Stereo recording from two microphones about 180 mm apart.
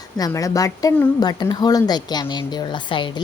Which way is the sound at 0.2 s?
20° left (ahead or behind).